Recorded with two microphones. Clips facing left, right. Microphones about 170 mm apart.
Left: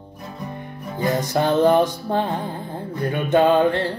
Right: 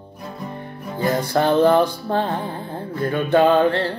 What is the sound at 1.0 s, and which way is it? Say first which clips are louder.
Music: right 1 dB; 15° left (ahead or behind).